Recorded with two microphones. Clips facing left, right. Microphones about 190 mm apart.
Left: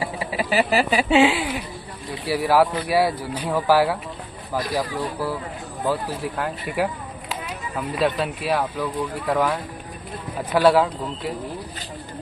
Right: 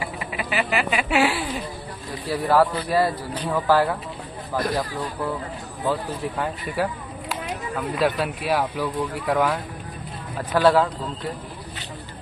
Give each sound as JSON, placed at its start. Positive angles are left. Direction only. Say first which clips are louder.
{"t": 0.0, "sound": "a sound", "louder": "left 4 dB", "side_deg": 30}
{"t": 1.1, "sound": "speech", "louder": "left 4 dB", "side_deg": 20}
{"t": 5.9, "sound": "speech", "louder": "left 1 dB", "side_deg": 5}
{"t": 8.0, "sound": "speech", "louder": "left 1 dB", "side_deg": 0}